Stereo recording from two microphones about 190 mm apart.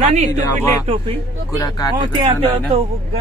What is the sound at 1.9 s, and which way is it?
Speech, 25° right (ahead or behind).